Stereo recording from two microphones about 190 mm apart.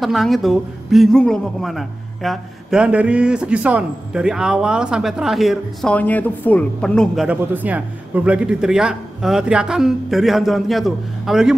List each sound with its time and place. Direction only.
0.0 s a woman's voice: centre (ahead or behind)
7.2 s a woman's voice: 10° right (ahead or behind)